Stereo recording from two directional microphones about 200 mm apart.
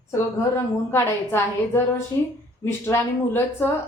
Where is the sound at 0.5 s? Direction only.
10° left (ahead or behind).